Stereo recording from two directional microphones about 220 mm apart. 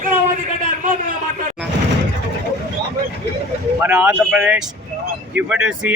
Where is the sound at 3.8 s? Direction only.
5° right (ahead or behind).